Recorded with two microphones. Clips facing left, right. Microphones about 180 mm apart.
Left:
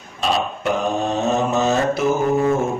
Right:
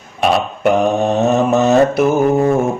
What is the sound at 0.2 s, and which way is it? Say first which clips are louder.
Mantra: right 6 dB; 60° right (ahead or behind).